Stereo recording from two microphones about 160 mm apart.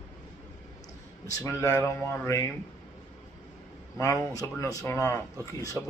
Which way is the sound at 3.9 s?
20° left (ahead or behind).